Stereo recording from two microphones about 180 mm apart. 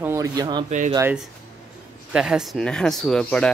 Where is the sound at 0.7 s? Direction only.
40° right (ahead or behind).